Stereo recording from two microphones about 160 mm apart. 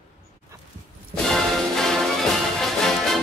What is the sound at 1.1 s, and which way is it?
Music, centre (ahead or behind).